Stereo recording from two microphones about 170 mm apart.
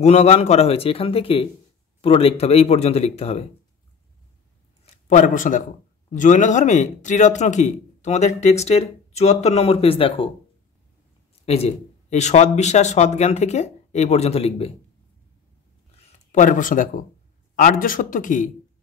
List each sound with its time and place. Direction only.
0.0 s speech: 40° left (ahead or behind)
5.0 s a man's voice: 50° left (ahead or behind); by 10.3 s 30° left (ahead or behind)
11.4 s speech: 40° left (ahead or behind)
16.0 s a man's voice: 50° left (ahead or behind)